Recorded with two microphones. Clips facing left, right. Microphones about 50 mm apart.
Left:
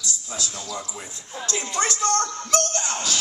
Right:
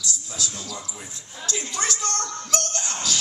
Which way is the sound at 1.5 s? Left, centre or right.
Left.